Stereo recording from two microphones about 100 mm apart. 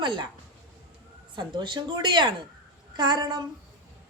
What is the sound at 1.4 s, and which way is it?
A woman's voice, 50° right (ahead or behind).